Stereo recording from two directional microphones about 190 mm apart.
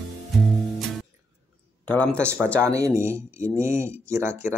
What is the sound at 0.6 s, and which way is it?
Music, centre (ahead or behind).